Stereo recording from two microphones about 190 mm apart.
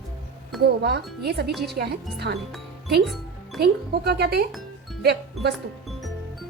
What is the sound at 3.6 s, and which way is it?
Speech, 60° right (ahead or behind).